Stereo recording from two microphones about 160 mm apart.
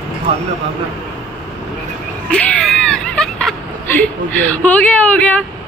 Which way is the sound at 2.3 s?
5° left (ahead or behind).